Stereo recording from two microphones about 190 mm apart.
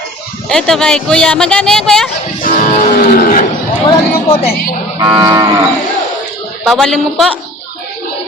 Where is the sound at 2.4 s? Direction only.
45° left (ahead or behind).